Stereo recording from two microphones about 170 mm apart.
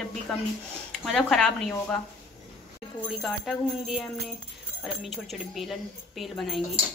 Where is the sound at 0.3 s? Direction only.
Centre (ahead or behind).